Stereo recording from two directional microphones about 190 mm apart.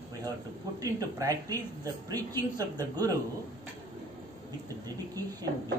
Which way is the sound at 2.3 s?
20° right (ahead or behind).